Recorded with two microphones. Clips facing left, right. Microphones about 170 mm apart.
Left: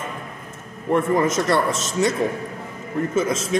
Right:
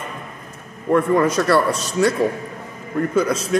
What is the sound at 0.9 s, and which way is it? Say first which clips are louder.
A man's voice: right 3 dB; 20° left (ahead or behind).